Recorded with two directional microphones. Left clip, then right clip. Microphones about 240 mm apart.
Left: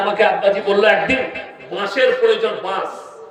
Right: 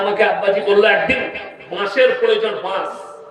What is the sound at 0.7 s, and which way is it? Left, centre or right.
A man's voice, centre.